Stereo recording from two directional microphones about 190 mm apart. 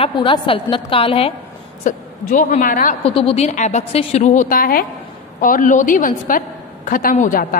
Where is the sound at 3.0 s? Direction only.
30° left (ahead or behind).